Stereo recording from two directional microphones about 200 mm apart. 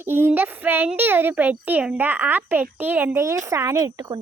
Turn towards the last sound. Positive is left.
turn(degrees=-15)  # may be behind; listen again after turning